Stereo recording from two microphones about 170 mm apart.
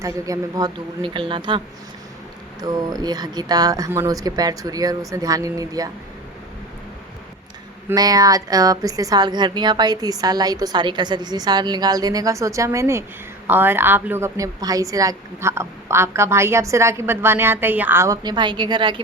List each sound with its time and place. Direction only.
0.0 s a woman's voice: 20° right (ahead or behind)
7.9 s a woman's voice: 20° right (ahead or behind)